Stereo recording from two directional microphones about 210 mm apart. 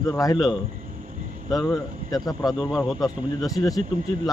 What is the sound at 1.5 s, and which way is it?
Speech, 15° left (ahead or behind).